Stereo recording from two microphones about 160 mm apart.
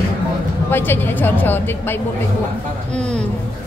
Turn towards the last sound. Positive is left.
turn(degrees=5)  # may be behind; listen again after turning